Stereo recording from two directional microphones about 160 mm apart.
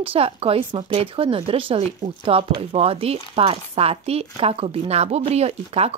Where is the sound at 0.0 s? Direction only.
35° right (ahead or behind).